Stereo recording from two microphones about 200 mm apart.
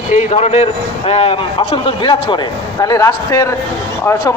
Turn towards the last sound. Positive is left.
turn(degrees=10)  # may be behind; listen again after turning